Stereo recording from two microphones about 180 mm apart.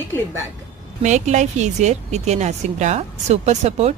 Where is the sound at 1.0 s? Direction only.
40° right (ahead or behind).